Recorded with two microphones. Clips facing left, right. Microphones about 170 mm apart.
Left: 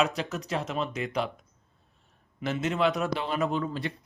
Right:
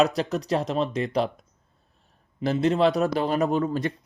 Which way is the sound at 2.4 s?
35° right (ahead or behind).